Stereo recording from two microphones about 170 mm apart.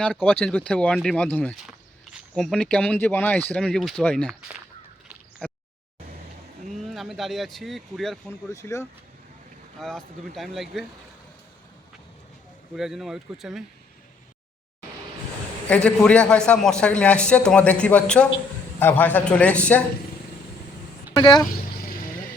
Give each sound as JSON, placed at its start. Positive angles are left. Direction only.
{"t": 0.0, "sound": "a man's voice", "side_deg": 10}
{"t": 6.9, "sound": "speech", "side_deg": 0}
{"t": 8.5, "sound": "a man's voice", "side_deg": 15}
{"t": 9.8, "sound": "speech", "side_deg": 0}
{"t": 12.7, "sound": "speech", "side_deg": 0}
{"t": 15.7, "sound": "a man's voice", "side_deg": 5}
{"t": 21.2, "sound": "speech", "side_deg": 25}